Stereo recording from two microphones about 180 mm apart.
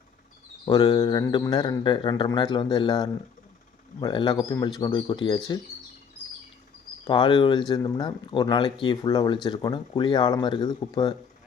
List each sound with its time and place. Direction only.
0.6 s speech: 25° left (ahead or behind)
7.1 s speech: 25° left (ahead or behind)